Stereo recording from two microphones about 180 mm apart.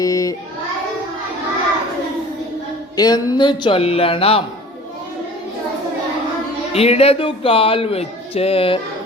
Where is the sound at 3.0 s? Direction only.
20° left (ahead or behind).